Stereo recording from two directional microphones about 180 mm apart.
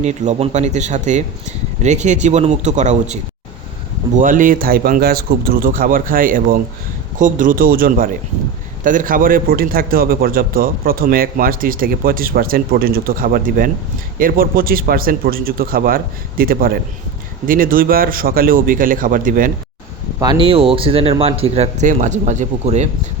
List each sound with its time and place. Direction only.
0.0 s a man's voice: 40° right (ahead or behind)
20.1 s speech: 25° right (ahead or behind)